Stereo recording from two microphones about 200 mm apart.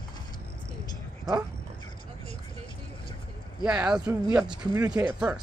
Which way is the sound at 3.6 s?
5° right (ahead or behind).